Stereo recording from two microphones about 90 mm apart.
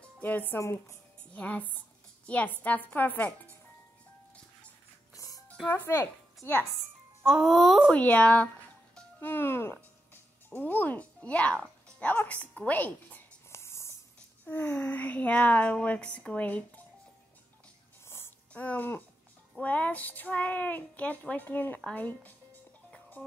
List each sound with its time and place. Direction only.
0.0 s speech: 20° left (ahead or behind)
0.6 s speech: 35° left (ahead or behind)
1.3 s speech: 15° left (ahead or behind)
5.1 s music: 40° left (ahead or behind)
5.7 s speech: 25° left (ahead or behind)
7.2 s speech: centre (ahead or behind)
7.9 s a child's voice: 15° left (ahead or behind)
13.5 s writing: 30° left (ahead or behind)
14.4 s speech: 20° left (ahead or behind)
18.0 s a sound: 30° left (ahead or behind)
18.5 s speech: 20° left (ahead or behind)
23.2 s music: 15° left (ahead or behind)